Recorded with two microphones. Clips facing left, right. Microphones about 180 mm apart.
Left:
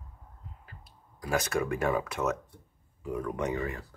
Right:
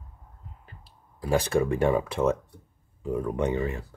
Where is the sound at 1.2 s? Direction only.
30° right (ahead or behind).